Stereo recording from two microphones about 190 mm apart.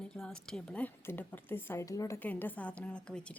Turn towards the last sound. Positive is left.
turn(degrees=5)  # may be behind; listen again after turning